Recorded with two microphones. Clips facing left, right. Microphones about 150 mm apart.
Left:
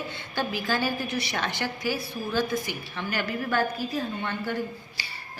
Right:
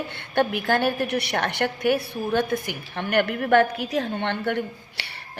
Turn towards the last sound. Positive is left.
turn(degrees=-70)  # may be behind; listen again after turning